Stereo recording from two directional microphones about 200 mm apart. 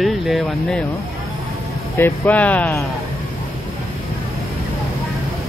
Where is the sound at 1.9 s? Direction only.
10° left (ahead or behind).